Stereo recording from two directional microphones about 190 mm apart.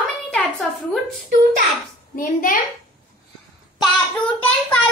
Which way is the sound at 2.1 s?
45° left (ahead or behind).